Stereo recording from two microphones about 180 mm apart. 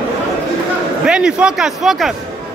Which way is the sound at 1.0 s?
5° right (ahead or behind).